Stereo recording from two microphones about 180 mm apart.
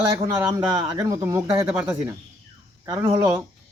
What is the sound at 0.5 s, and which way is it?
Speech, 20° right (ahead or behind).